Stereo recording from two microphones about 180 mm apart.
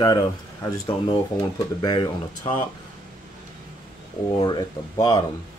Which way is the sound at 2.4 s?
35° left (ahead or behind).